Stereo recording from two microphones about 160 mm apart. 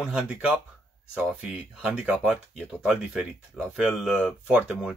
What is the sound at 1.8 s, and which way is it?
Speech, 5° right (ahead or behind).